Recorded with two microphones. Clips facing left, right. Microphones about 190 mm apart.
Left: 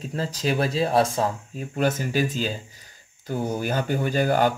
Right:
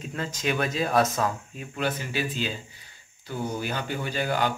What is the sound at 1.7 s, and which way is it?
Speech, 45° left (ahead or behind).